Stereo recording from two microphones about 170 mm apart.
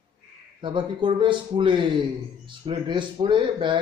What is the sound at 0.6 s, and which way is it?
A man's voice, 30° right (ahead or behind).